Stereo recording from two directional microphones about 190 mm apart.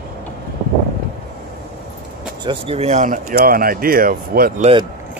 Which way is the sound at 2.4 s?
30° right (ahead or behind).